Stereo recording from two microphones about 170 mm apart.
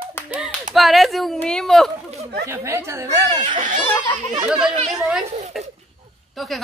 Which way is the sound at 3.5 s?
50° right (ahead or behind).